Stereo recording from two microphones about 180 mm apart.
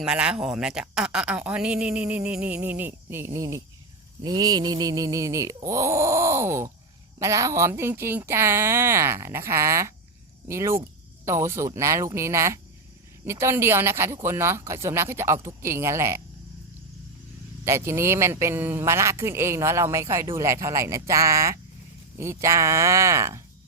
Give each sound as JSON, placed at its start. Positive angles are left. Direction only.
{"t": 0.0, "sound": "speech", "side_deg": -5}
{"t": 17.7, "sound": "speech", "side_deg": -15}